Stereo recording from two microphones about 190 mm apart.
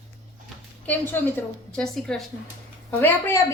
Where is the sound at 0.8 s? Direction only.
10° left (ahead or behind).